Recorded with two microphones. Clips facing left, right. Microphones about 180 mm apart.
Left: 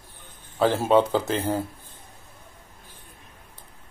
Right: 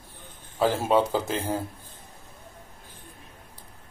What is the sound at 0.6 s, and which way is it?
Speech, 10° right (ahead or behind).